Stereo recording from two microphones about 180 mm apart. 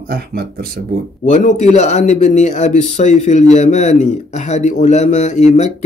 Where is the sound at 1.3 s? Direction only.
40° left (ahead or behind).